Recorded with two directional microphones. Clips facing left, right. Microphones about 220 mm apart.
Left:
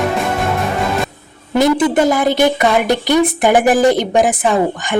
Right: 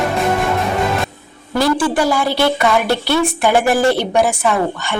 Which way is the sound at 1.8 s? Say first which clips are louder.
Left 3 dB; 20° left (ahead or behind).